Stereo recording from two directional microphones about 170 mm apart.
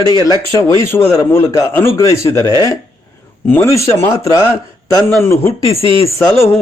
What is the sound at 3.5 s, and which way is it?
Speech, 15° left (ahead or behind).